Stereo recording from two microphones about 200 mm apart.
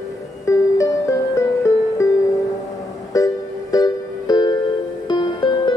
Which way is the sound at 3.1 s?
15° left (ahead or behind).